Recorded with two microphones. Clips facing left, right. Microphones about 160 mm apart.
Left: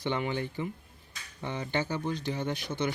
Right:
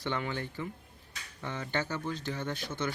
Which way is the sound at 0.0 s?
15° left (ahead or behind).